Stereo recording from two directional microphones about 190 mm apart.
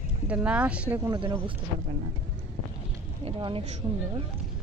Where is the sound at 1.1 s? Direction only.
25° right (ahead or behind).